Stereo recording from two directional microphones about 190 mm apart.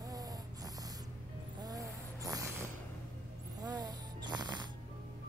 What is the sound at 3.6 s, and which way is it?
Snoring, 20° right (ahead or behind).